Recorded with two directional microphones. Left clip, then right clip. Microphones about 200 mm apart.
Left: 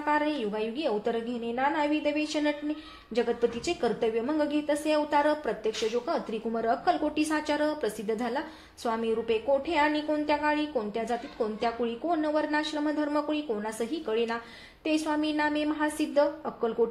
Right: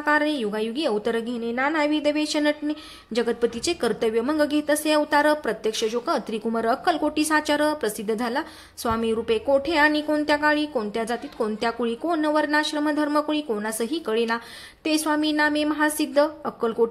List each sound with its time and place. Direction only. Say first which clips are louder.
0.0 s a woman's voice: right 5 dB; 35° right (ahead or behind)